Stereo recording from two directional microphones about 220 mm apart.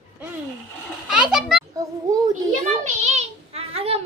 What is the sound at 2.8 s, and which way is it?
Child singing, 30° right (ahead or behind).